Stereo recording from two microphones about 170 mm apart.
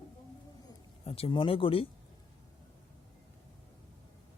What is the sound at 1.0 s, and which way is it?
Speech, 35° left (ahead or behind).